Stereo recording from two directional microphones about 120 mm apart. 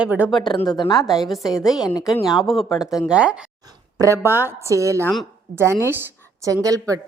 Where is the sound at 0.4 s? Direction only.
35° left (ahead or behind).